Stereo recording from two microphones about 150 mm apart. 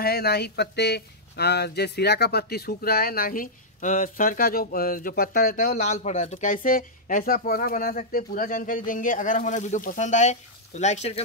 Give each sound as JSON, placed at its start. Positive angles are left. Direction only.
{"t": 0.0, "sound": "speech", "side_deg": 90}
{"t": 5.8, "sound": "speech", "side_deg": 50}